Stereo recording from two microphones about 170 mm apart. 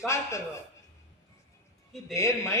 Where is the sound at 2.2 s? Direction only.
15° left (ahead or behind).